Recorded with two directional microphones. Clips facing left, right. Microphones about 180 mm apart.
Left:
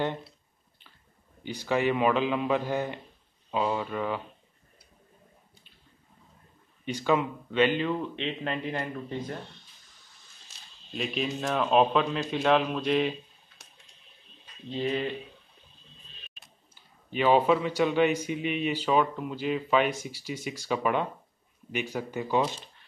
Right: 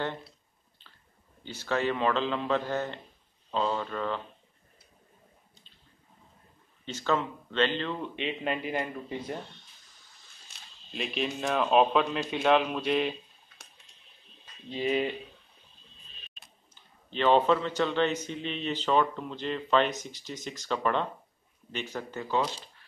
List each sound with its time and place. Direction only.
0.0 s a man's voice: 15° left (ahead or behind)
1.4 s a man's voice: 15° left (ahead or behind)
6.8 s a man's voice: 10° left (ahead or behind)
8.2 s a man's voice: 5° right (ahead or behind)
11.0 s a man's voice: centre (ahead or behind)
14.8 s speech: 10° right (ahead or behind)
16.7 s a man's voice: 10° left (ahead or behind)